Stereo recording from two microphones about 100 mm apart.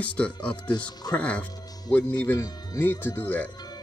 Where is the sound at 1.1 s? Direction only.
15° left (ahead or behind).